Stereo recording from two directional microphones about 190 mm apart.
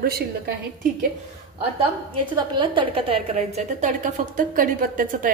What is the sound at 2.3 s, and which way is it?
A woman's voice, 25° right (ahead or behind).